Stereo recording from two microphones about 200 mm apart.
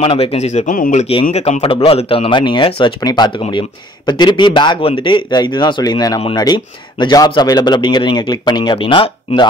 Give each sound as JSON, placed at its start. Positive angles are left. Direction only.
{"t": 0.0, "sound": "speech", "side_deg": 30}